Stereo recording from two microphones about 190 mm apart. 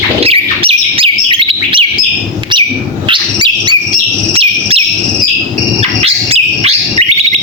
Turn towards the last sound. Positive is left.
turn(degrees=-30)  # may be behind; listen again after turning